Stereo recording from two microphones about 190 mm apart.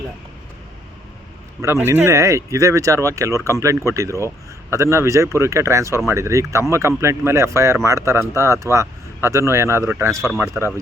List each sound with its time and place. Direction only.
1.6 s speech: 15° right (ahead or behind)
10.3 s speech: centre (ahead or behind)